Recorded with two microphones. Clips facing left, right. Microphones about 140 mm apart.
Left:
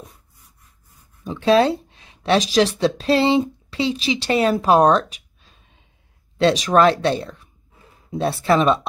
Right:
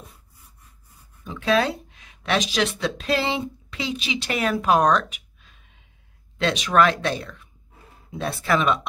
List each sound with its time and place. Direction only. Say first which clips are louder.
1.2 s speech: left 6 dB; 35° left (ahead or behind)